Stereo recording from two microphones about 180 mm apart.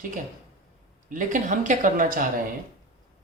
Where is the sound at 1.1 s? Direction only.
45° right (ahead or behind).